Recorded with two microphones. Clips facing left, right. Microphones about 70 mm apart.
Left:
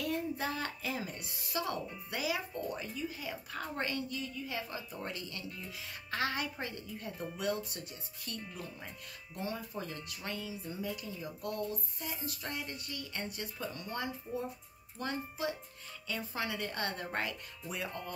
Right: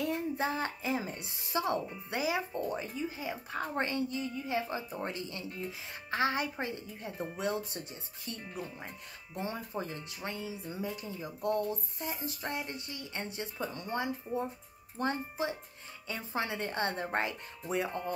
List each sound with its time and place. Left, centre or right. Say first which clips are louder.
0.0 s a child's voice: right 3 dB; right